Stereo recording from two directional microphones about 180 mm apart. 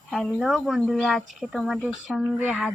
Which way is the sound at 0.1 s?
Centre (ahead or behind).